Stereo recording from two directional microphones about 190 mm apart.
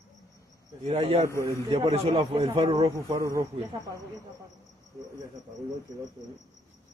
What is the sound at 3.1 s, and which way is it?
Speech, 15° right (ahead or behind).